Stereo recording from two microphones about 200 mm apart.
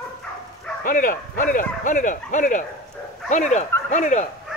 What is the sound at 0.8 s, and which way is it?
Speech, 45° left (ahead or behind).